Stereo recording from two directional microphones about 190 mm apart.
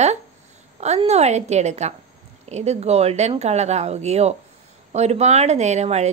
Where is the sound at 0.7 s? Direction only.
35° right (ahead or behind).